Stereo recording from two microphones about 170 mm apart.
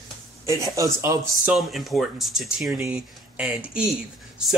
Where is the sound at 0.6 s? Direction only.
20° right (ahead or behind).